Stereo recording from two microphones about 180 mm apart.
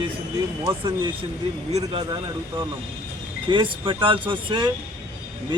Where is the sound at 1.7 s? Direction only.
30° right (ahead or behind).